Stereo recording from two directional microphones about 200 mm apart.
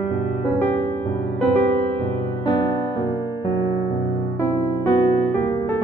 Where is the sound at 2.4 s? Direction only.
20° left (ahead or behind).